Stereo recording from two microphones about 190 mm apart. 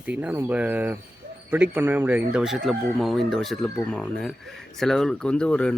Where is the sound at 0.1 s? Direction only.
10° right (ahead or behind).